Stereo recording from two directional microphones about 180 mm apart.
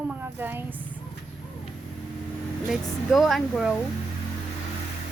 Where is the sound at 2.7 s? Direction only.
Centre (ahead or behind).